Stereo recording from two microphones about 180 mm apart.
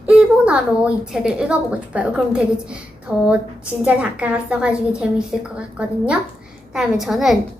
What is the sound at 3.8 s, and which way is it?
A woman's voice, 5° right (ahead or behind).